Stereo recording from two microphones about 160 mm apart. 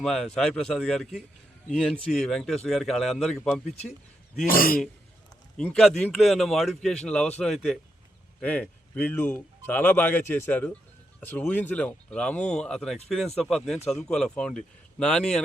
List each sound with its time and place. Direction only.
0.0 s speech: centre (ahead or behind)
4.4 s a man's voice: 65° left (ahead or behind)
5.5 s speech: 5° left (ahead or behind)